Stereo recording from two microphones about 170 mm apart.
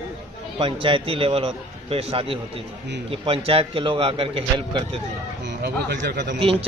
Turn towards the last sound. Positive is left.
turn(degrees=-85)